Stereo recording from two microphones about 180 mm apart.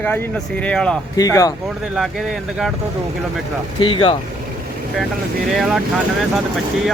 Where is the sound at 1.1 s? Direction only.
20° left (ahead or behind).